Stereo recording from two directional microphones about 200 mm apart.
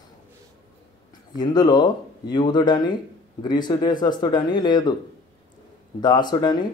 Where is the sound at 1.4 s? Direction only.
20° left (ahead or behind).